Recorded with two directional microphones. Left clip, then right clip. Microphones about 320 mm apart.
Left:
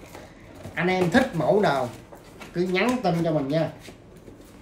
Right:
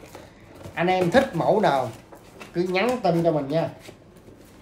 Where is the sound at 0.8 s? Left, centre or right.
Centre.